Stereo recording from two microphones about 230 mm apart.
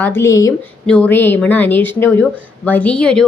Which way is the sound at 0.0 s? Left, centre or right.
Centre.